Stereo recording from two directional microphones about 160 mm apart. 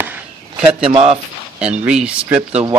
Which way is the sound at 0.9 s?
35° right (ahead or behind).